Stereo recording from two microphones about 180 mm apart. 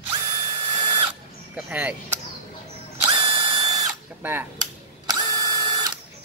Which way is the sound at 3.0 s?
30° right (ahead or behind).